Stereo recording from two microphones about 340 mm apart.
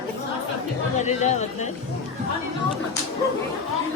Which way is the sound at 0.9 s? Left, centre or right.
Centre.